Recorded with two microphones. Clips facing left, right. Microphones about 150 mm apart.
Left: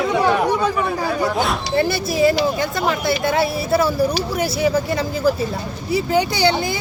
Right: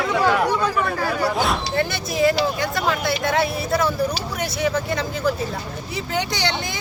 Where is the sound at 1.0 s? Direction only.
Centre (ahead or behind).